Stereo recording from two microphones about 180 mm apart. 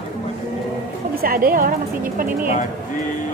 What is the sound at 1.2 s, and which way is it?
A woman's voice, 55° right (ahead or behind).